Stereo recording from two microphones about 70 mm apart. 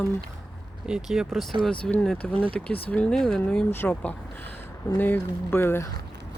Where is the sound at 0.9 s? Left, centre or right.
Centre.